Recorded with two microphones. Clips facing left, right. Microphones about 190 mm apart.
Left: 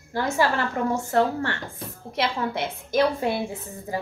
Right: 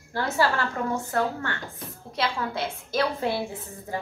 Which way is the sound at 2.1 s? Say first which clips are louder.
Left 2 dB; 20° left (ahead or behind).